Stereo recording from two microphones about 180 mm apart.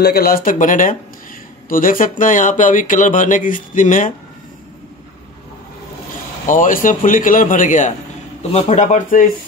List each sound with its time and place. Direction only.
0.0 s speech: 60° left (ahead or behind)
6.4 s speech: 45° left (ahead or behind)